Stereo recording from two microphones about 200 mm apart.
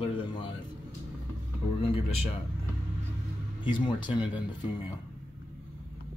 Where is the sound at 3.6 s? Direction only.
25° left (ahead or behind).